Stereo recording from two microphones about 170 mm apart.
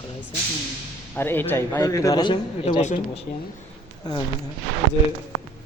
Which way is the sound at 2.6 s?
40° left (ahead or behind).